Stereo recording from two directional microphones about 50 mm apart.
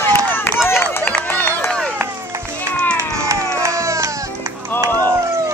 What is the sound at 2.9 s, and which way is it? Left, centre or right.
Music, right.